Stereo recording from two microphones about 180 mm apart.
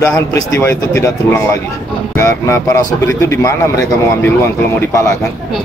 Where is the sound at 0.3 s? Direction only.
15° left (ahead or behind).